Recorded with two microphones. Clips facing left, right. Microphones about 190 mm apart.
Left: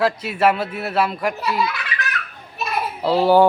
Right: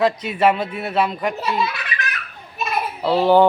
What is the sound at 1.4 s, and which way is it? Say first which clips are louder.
Speech: even; 25° right (ahead or behind).